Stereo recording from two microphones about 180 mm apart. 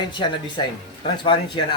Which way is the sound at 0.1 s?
25° left (ahead or behind).